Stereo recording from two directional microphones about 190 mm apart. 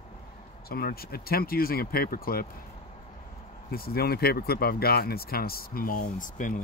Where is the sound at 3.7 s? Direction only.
55° left (ahead or behind).